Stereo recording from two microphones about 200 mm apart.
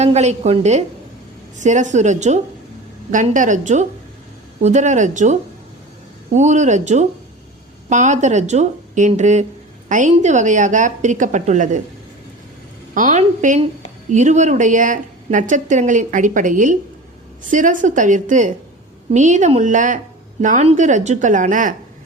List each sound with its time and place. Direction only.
0.0 s speech: 35° right (ahead or behind)
12.9 s speech: 40° right (ahead or behind)